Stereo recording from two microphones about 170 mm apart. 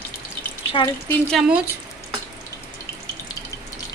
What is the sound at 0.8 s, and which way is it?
Speech, 25° left (ahead or behind).